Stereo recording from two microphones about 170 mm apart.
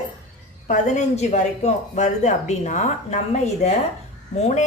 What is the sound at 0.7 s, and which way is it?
A woman's voice, 45° left (ahead or behind).